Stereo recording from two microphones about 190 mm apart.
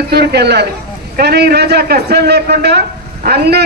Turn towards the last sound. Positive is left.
turn(degrees=-60)  # may be behind; listen again after turning